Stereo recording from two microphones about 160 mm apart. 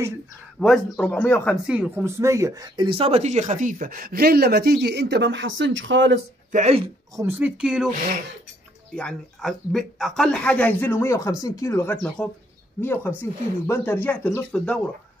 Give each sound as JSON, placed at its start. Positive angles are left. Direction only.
{"t": 0.6, "sound": "speech", "side_deg": 5}
{"t": 1.7, "sound": "speech", "side_deg": -10}
{"t": 6.5, "sound": "speech", "side_deg": -45}
{"t": 7.2, "sound": "speech", "side_deg": -15}
{"t": 7.9, "sound": "speech", "side_deg": -60}
{"t": 8.9, "sound": "speech", "side_deg": 5}